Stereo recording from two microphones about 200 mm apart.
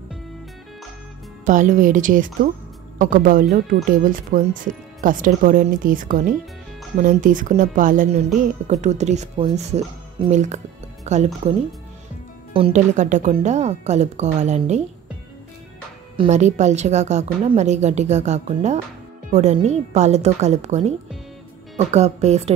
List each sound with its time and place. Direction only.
1.4 s a woman's voice: 40° right (ahead or behind)
12.5 s a woman's voice: 30° right (ahead or behind)
16.2 s a woman's voice: 35° right (ahead or behind)